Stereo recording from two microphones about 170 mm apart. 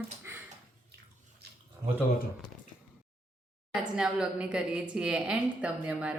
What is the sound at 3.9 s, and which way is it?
A woman's voice, 5° right (ahead or behind).